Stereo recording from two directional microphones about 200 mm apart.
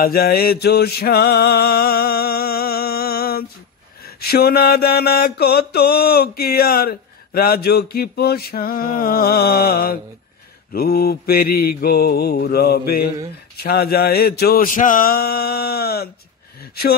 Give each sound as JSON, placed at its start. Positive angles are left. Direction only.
{"t": 0.0, "sound": "mantra", "side_deg": 50}